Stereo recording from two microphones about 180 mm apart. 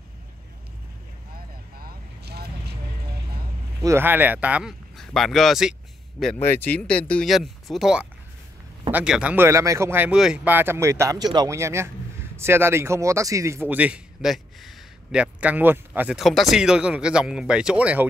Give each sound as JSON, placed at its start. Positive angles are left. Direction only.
{"t": 1.8, "sound": "vehicle", "side_deg": -65}
{"t": 3.8, "sound": "speech", "side_deg": -15}
{"t": 6.3, "sound": "speech", "side_deg": 10}